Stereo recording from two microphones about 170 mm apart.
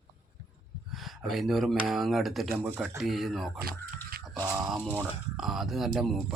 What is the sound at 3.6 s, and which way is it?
Speech, 60° right (ahead or behind).